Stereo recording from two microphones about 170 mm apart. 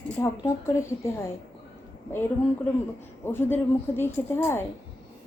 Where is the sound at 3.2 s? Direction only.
15° left (ahead or behind).